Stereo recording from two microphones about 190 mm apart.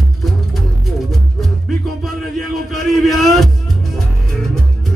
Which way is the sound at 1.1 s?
Centre (ahead or behind).